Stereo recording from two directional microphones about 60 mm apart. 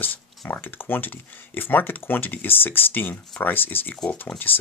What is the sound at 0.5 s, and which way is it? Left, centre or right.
Speech, left.